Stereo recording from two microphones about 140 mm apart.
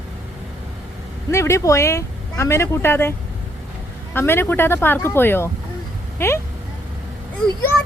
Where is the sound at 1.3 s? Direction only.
20° left (ahead or behind).